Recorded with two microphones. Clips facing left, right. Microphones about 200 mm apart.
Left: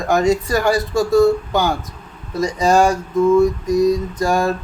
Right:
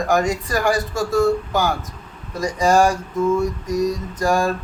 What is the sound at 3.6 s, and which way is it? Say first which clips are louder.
Speech: left 6 dB; 25° left (ahead or behind).